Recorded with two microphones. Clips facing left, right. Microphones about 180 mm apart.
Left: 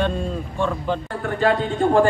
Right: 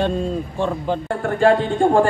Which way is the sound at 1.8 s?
50° right (ahead or behind).